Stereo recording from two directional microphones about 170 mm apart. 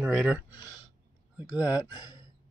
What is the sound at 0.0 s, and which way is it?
Speech, 5° right (ahead or behind).